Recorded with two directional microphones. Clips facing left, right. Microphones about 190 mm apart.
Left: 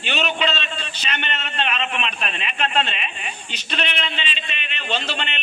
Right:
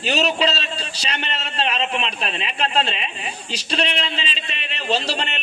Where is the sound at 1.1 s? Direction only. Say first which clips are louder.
Even; 35° right (ahead or behind).